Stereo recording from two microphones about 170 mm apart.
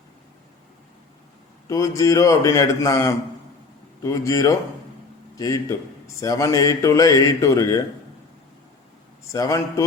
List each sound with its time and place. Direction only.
1.6 s speech: 20° left (ahead or behind)
9.3 s speech: 20° left (ahead or behind)